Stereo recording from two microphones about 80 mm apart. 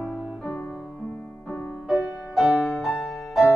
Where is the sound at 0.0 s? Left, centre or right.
Centre.